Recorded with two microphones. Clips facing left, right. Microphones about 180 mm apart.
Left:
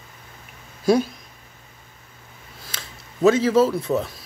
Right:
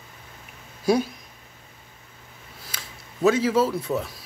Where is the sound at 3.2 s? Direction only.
10° right (ahead or behind).